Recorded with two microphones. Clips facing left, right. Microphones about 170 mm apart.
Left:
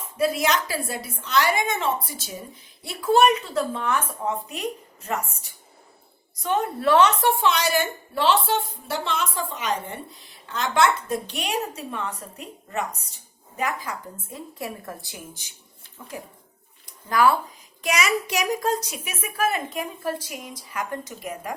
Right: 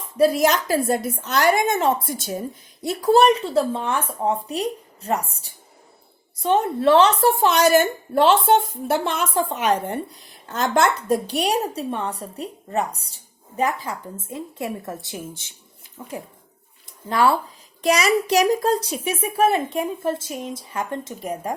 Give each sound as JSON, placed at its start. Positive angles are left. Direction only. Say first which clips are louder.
{"t": 0.2, "sound": "a woman's voice", "louder": "right 5 dB", "side_deg": -40}